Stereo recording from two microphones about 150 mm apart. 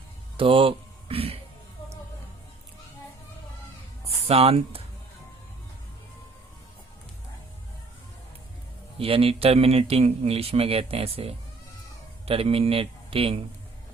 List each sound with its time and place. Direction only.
0.3 s speech: 35° right (ahead or behind)
4.3 s speech: 40° right (ahead or behind)
9.0 s a man's voice: 40° right (ahead or behind)